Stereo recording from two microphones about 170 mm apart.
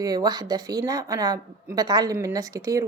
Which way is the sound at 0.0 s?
20° right (ahead or behind).